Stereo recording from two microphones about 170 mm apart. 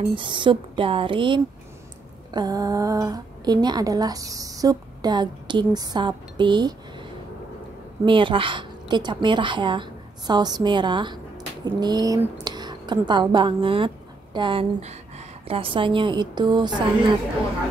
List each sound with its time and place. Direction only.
0.1 s a woman's voice: 30° right (ahead or behind)